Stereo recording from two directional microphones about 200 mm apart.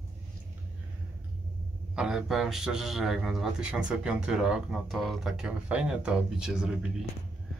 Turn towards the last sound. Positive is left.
turn(degrees=-5)  # may be behind; listen again after turning